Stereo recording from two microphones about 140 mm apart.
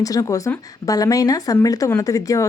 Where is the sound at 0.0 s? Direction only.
25° left (ahead or behind).